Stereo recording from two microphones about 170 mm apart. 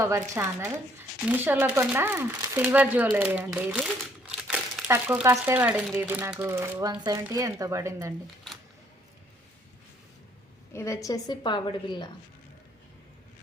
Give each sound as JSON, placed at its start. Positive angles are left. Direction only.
{"t": 0.0, "sound": "speech", "side_deg": -15}
{"t": 4.3, "sound": "crumpling", "side_deg": -5}
{"t": 6.0, "sound": "speech", "side_deg": -10}
{"t": 10.7, "sound": "a woman's voice", "side_deg": 15}